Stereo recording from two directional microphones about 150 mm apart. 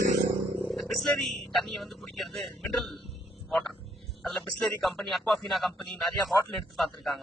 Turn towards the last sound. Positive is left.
turn(degrees=0)  # may be behind; listen again after turning